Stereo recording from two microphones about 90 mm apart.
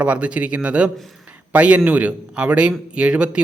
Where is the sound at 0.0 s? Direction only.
15° right (ahead or behind).